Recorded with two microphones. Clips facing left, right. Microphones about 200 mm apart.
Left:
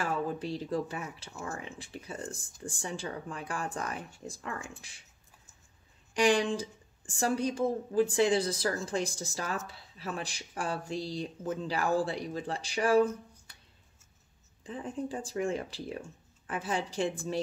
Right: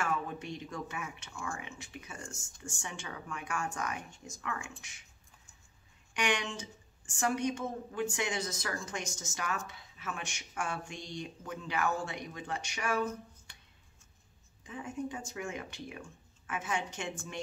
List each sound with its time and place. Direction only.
0.0 s speech: 30° left (ahead or behind)
6.1 s speech: 35° left (ahead or behind)
14.6 s speech: 35° left (ahead or behind)